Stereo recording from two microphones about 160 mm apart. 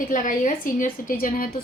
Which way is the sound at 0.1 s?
55° left (ahead or behind).